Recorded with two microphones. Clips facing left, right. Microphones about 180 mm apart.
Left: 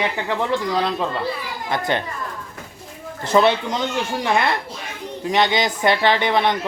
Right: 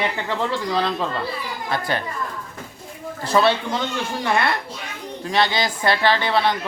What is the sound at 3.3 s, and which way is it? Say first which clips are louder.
Speech: left 2 dB; 20° left (ahead or behind).